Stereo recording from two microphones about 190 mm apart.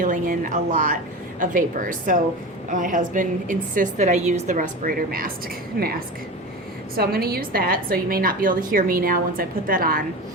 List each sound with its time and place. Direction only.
0.0 s a woman's voice: 45° right (ahead or behind)
6.9 s a woman's voice: 55° right (ahead or behind)